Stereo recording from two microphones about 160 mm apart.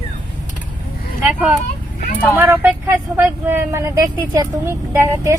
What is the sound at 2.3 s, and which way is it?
Speech, 15° right (ahead or behind).